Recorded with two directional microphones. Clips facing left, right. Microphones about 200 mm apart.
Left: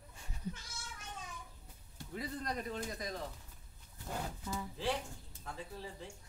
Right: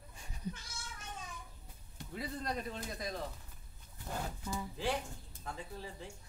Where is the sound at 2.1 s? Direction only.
30° right (ahead or behind).